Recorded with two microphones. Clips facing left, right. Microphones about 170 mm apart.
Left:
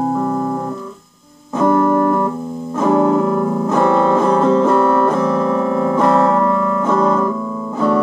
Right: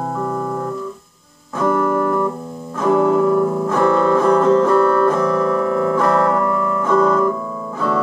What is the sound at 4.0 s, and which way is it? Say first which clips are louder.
Music: left 1 dB; 20° left (ahead or behind).